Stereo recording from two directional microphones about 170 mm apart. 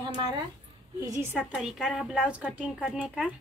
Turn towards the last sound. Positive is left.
turn(degrees=-10)  # may be behind; listen again after turning